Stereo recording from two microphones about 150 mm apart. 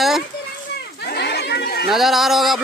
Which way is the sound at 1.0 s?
90° left.